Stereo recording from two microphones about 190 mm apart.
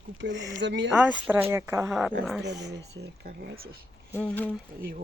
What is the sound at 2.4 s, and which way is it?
Speech, 60° right (ahead or behind).